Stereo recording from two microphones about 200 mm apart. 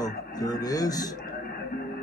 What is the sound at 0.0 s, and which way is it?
Speech, 20° left (ahead or behind).